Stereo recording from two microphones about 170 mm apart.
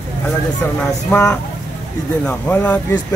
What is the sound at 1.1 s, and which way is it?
Speech, 10° left (ahead or behind).